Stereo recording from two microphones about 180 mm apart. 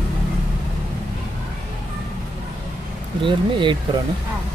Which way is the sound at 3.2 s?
25° right (ahead or behind).